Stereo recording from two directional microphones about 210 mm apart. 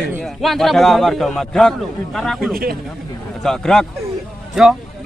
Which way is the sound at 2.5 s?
45° right (ahead or behind).